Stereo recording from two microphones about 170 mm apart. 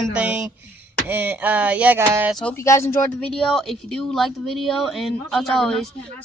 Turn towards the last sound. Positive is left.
turn(degrees=5)  # may be behind; listen again after turning